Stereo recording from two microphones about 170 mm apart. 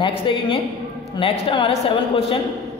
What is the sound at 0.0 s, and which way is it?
A woman's voice, 30° left (ahead or behind).